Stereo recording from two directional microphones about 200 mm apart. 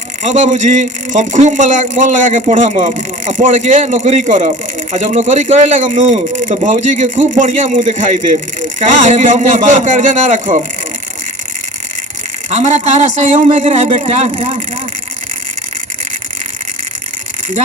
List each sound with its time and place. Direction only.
0.2 s speech: 35° right (ahead or behind)
8.8 s speech: 35° right (ahead or behind)
12.5 s speech: 35° right (ahead or behind)